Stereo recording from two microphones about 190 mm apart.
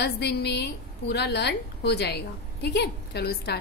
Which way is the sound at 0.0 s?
60° left (ahead or behind).